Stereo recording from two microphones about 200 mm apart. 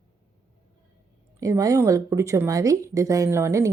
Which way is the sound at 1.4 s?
15° right (ahead or behind).